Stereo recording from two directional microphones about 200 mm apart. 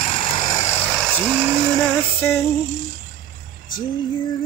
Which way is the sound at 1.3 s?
10° right (ahead or behind).